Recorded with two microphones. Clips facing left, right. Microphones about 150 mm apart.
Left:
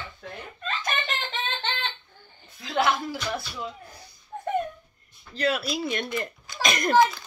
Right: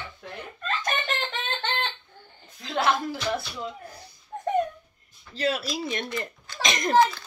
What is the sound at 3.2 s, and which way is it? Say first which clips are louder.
Speech: right 3 dB; 25° right (ahead or behind).